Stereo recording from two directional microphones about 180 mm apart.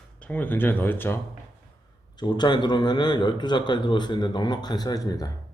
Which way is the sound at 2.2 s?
25° left (ahead or behind).